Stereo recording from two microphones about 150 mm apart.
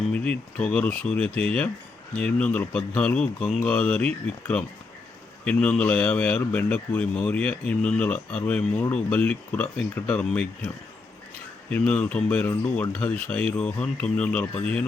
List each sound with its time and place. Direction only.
0.1 s a man's voice: 10° left (ahead or behind)
11.7 s a man's voice: 10° left (ahead or behind)